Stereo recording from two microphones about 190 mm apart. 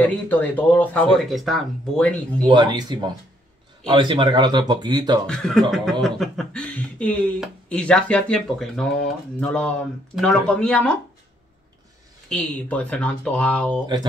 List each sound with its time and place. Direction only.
0.0 s speech: 10° left (ahead or behind)
2.4 s speech: 25° right (ahead or behind)
5.2 s speech: 5° left (ahead or behind)
12.3 s speech: 5° left (ahead or behind)